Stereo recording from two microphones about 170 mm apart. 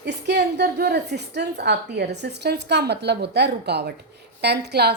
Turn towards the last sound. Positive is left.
turn(degrees=-75)  # may be behind; listen again after turning